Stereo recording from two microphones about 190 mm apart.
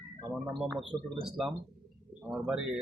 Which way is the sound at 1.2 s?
Centre (ahead or behind).